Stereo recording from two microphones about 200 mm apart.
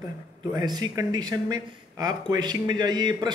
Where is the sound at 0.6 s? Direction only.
20° right (ahead or behind).